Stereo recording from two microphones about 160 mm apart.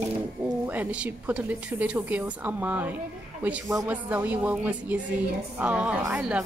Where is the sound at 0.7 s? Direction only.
10° right (ahead or behind).